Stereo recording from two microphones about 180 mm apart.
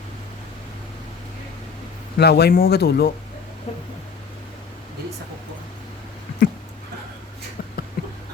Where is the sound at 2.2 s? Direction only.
65° left (ahead or behind).